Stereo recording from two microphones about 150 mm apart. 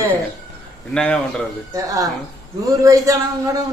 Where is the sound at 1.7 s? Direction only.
25° right (ahead or behind).